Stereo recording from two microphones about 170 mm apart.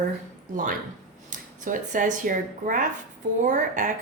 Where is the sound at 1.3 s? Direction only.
50° right (ahead or behind).